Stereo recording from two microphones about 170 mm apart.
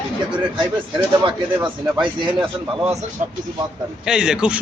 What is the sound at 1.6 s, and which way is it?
Speech, 30° right (ahead or behind).